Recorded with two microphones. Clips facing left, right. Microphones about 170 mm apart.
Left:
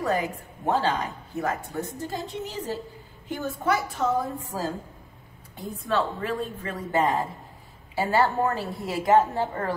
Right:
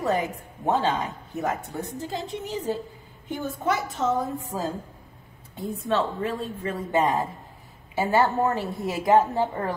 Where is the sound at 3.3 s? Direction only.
20° right (ahead or behind).